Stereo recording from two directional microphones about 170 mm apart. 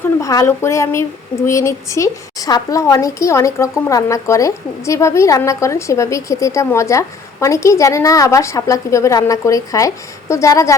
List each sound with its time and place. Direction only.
0.2 s speech: 20° left (ahead or behind)